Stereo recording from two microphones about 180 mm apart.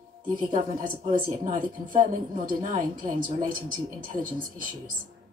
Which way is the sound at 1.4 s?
35° right (ahead or behind).